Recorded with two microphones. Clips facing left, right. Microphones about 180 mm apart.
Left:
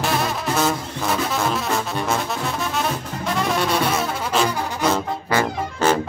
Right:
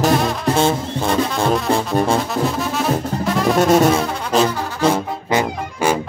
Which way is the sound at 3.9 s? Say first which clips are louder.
Right 4 dB; 30° right (ahead or behind).